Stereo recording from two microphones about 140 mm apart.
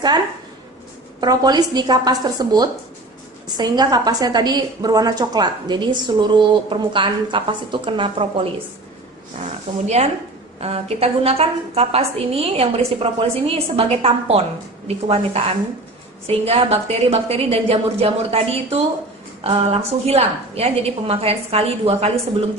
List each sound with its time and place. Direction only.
1.2 s a woman's voice: 30° right (ahead or behind)
9.8 s a woman's voice: 50° right (ahead or behind)